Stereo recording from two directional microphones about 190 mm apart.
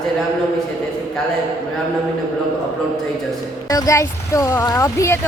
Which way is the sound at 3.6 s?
20° left (ahead or behind).